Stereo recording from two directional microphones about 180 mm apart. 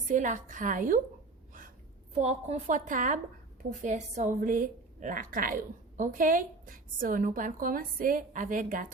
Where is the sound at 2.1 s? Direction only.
40° right (ahead or behind).